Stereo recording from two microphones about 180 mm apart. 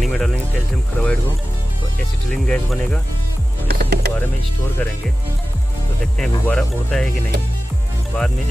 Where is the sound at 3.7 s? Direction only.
65° right (ahead or behind).